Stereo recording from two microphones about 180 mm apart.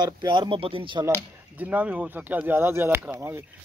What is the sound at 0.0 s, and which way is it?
Speech, 25° right (ahead or behind).